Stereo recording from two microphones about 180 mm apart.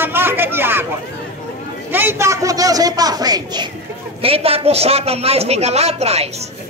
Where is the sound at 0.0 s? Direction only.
10° right (ahead or behind).